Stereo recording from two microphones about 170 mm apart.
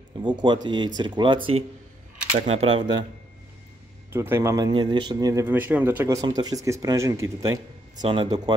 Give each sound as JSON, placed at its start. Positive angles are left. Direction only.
{"t": 0.2, "sound": "speech", "side_deg": -25}
{"t": 4.1, "sound": "speech", "side_deg": -15}